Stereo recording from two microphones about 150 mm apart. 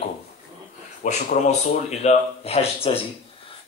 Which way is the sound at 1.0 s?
50° left (ahead or behind).